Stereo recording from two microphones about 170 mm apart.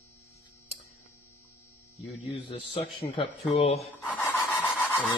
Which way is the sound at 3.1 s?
35° left (ahead or behind).